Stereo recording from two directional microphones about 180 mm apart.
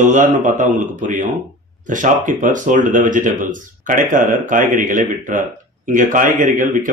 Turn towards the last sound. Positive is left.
turn(degrees=-45)  # may be behind; listen again after turning